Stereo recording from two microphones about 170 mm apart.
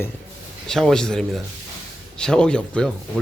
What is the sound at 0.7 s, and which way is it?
Speech, 5° left (ahead or behind).